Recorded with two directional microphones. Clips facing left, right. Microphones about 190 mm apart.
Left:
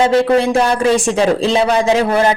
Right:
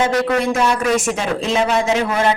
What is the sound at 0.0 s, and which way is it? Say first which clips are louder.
A man's voice: left 5 dB; 30° left (ahead or behind).